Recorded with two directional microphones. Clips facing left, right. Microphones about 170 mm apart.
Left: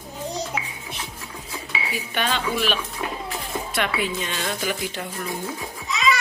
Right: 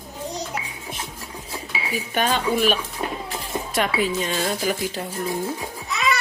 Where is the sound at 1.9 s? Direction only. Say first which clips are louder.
Right 4 dB; 45° right (ahead or behind).